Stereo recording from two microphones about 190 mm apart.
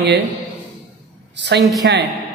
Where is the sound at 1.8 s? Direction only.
60° right (ahead or behind).